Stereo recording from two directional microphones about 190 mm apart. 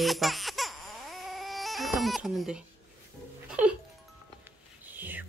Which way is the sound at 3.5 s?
5° right (ahead or behind).